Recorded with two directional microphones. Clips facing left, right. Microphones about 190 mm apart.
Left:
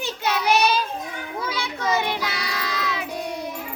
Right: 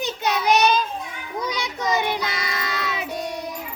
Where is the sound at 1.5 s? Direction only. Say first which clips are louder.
Even; 15° right (ahead or behind).